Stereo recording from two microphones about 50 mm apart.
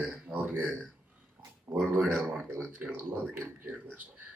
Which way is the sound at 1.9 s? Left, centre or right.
Right.